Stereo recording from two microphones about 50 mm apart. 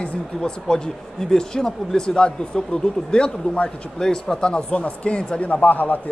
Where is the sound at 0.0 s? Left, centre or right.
Centre.